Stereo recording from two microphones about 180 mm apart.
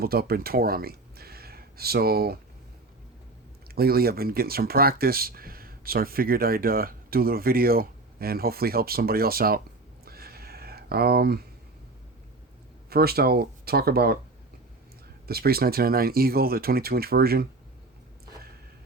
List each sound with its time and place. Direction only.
0.0 s speech: 60° right (ahead or behind)
3.8 s speech: 55° right (ahead or behind)
10.1 s a sound: 60° right (ahead or behind)
12.9 s speech: 60° right (ahead or behind)
15.3 s speech: 60° right (ahead or behind)